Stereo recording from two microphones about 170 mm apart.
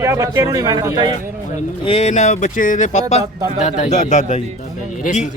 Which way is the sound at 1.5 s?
40° left (ahead or behind).